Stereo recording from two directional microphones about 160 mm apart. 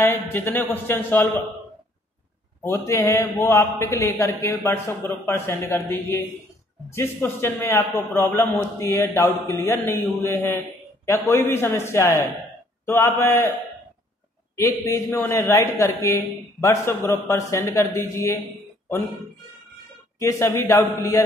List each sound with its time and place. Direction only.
0.0 s a man's voice: 10° left (ahead or behind)
2.6 s a man's voice: 15° left (ahead or behind)
14.6 s a man's voice: 20° left (ahead or behind)
20.2 s a man's voice: 20° left (ahead or behind)